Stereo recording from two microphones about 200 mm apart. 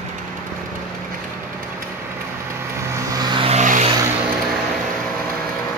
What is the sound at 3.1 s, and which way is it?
Vehicle, 20° right (ahead or behind).